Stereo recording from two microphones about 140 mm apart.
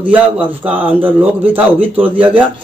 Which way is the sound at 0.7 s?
15° right (ahead or behind).